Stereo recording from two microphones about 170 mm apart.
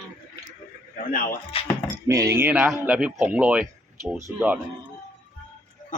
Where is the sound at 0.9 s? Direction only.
50° left (ahead or behind).